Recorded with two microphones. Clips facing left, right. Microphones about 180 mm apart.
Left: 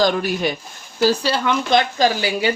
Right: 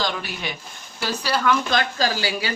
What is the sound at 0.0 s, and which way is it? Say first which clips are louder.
Speech: left 9 dB; 45° left (ahead or behind).